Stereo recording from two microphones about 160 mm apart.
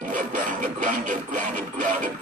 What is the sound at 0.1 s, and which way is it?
Music, 55° right (ahead or behind).